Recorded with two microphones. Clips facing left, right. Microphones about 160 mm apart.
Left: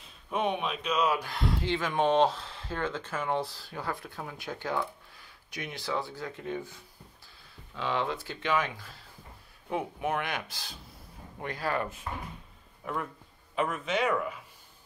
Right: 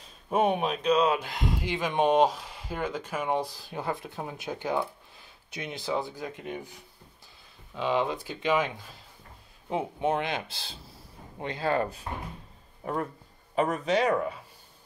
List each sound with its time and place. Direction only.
0.3 s speech: 45° right (ahead or behind)
0.9 s speech: 25° right (ahead or behind)